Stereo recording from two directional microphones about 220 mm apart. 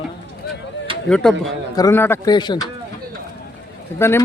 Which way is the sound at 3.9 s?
10° left (ahead or behind).